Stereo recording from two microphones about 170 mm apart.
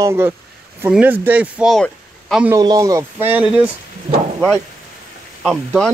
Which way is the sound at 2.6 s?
20° right (ahead or behind).